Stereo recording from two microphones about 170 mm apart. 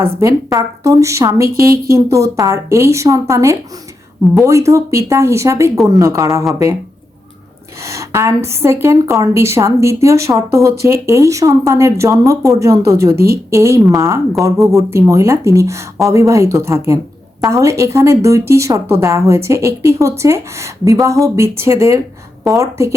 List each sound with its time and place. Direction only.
0.2 s a woman's voice: 20° right (ahead or behind)
7.9 s speech: 15° right (ahead or behind)
13.1 s a woman's voice: 65° right (ahead or behind)
13.5 s speech: 15° right (ahead or behind)